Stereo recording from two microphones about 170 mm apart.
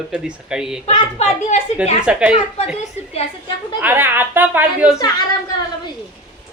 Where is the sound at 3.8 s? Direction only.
10° right (ahead or behind).